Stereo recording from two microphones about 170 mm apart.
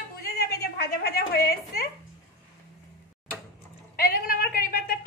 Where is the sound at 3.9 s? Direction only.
60° left (ahead or behind).